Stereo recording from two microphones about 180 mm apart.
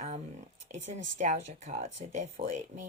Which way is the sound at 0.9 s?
40° right (ahead or behind).